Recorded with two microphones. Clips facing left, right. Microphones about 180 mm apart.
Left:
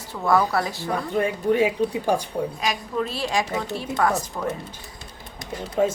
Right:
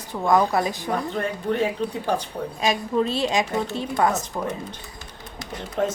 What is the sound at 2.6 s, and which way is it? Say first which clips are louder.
Speech: right 4 dB; 25° right (ahead or behind).